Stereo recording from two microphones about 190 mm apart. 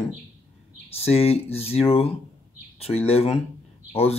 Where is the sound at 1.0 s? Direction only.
30° left (ahead or behind).